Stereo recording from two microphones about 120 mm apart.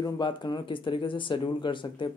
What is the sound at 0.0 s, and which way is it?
Speech, 40° left (ahead or behind).